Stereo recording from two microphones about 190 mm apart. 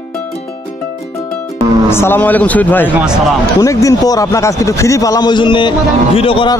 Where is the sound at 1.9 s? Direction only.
10° left (ahead or behind); by 6.5 s 30° left (ahead or behind).